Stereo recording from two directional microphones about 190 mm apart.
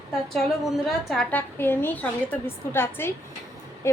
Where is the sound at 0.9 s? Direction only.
5° left (ahead or behind).